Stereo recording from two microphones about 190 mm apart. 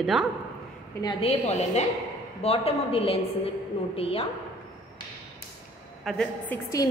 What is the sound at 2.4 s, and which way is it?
A woman's voice, 30° left (ahead or behind).